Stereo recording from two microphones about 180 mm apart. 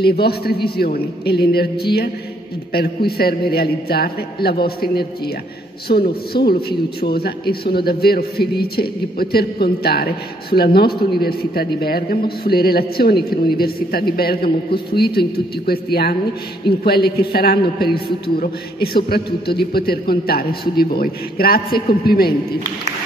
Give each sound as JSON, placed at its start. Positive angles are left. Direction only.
{"t": 0.0, "sound": "a man's voice", "side_deg": 60}